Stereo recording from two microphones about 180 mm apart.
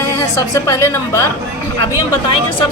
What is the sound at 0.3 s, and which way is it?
Speech, 15° left (ahead or behind).